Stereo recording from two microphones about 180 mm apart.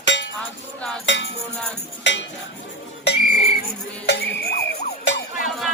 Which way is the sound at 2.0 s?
85° left.